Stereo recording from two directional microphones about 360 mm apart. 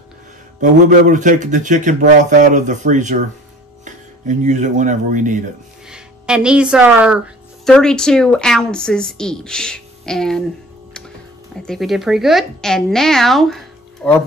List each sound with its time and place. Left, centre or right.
0.6 s speech: right
5.9 s a woman's voice: centre
11.6 s speech: centre